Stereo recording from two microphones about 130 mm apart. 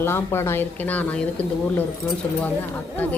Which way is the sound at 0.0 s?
20° left (ahead or behind).